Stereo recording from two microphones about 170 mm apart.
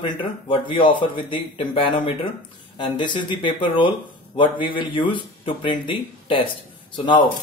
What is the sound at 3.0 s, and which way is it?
Speech, 25° left (ahead or behind).